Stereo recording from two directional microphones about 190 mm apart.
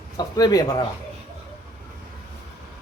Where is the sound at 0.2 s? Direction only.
20° left (ahead or behind).